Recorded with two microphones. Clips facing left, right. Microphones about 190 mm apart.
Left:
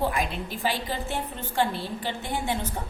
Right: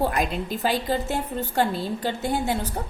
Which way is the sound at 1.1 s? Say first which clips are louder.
Right 5 dB; 40° right (ahead or behind).